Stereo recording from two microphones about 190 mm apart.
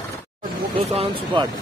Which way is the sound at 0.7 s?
30° right (ahead or behind).